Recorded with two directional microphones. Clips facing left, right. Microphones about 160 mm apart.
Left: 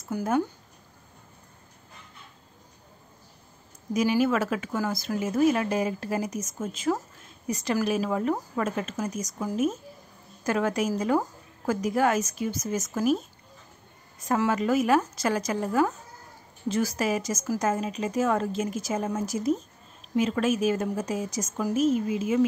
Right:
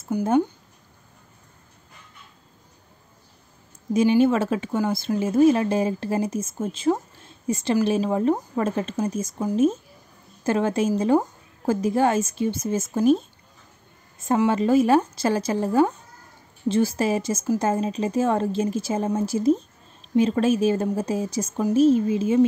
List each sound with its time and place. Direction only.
0.0 s speech: 25° right (ahead or behind)
3.9 s speech: 25° right (ahead or behind)
14.2 s speech: 25° right (ahead or behind)